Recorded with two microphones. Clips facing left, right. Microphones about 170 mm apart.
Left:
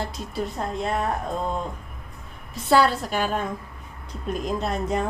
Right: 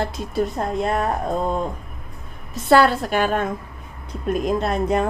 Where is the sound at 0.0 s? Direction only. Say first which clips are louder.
Right 6 dB; 55° right (ahead or behind).